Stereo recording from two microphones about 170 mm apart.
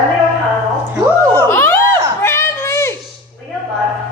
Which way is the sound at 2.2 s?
15° left (ahead or behind).